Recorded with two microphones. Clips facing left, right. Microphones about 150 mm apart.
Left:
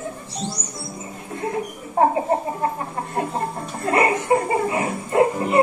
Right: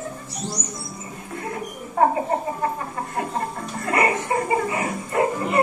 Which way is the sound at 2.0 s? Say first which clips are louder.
Left 1 dB; 30° left (ahead or behind).